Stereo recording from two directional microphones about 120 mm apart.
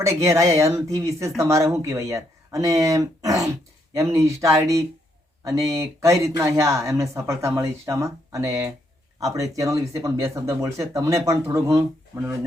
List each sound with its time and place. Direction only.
0.0 s speech: 25° right (ahead or behind)